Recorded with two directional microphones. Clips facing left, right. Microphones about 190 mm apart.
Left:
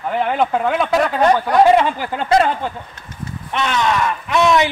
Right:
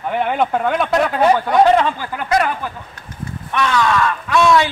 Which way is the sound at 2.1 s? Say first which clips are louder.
Left 3 dB; 25° left (ahead or behind).